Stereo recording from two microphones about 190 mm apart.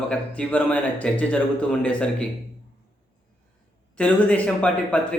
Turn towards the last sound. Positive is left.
turn(degrees=5)  # may be behind; listen again after turning